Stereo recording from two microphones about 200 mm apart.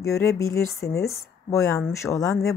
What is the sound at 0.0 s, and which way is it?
Speech, 15° left (ahead or behind).